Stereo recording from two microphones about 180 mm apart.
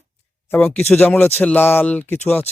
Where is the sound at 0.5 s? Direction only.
10° left (ahead or behind).